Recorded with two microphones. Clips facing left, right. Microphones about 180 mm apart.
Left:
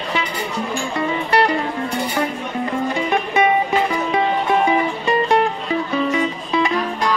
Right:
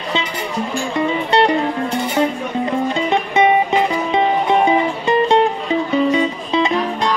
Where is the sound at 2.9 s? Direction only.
20° right (ahead or behind).